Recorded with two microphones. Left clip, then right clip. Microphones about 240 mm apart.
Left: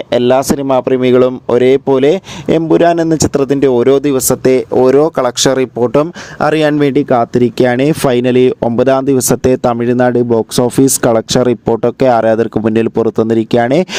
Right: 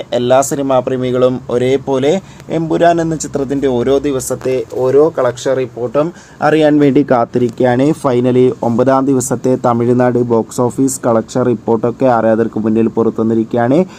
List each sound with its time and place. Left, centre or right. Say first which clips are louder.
0.1 s speech: left 1 dB; left
11.1 s speech: left 2 dB; left